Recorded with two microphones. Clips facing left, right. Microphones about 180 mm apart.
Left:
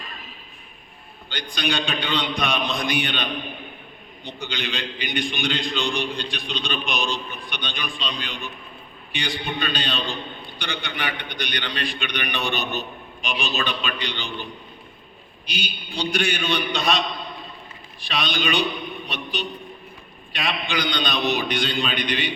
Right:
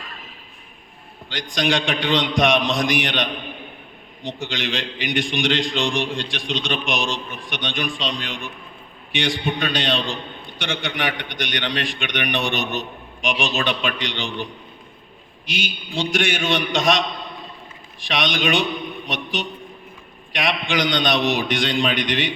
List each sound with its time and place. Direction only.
1.3 s a man's voice: 90° right
15.4 s a man's voice: 90° right
18.0 s a man's voice: 90° right